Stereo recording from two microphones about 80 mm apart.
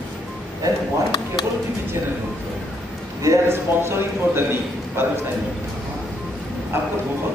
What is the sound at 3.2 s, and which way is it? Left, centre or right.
A man's voice, right.